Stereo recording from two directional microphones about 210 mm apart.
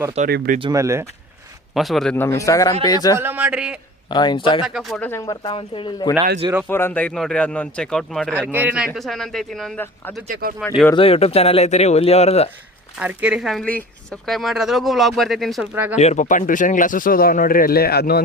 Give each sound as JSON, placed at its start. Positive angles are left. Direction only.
{"t": 0.3, "sound": "speech", "side_deg": -45}
{"t": 0.6, "sound": "speech", "side_deg": -15}
{"t": 1.7, "sound": "speech", "side_deg": 0}
{"t": 3.2, "sound": "speech", "side_deg": -10}
{"t": 4.1, "sound": "speech", "side_deg": 20}
{"t": 4.6, "sound": "speech", "side_deg": 0}
{"t": 6.7, "sound": "speech", "side_deg": 10}
{"t": 8.5, "sound": "speech", "side_deg": -10}
{"t": 10.2, "sound": "speech", "side_deg": -45}
{"t": 10.9, "sound": "speech", "side_deg": 25}
{"t": 13.0, "sound": "speech", "side_deg": -5}
{"t": 16.0, "sound": "speech", "side_deg": 35}